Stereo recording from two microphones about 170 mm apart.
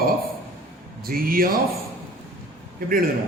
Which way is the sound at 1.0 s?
60° right (ahead or behind).